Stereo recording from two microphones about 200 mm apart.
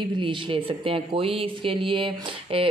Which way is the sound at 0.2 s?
25° right (ahead or behind).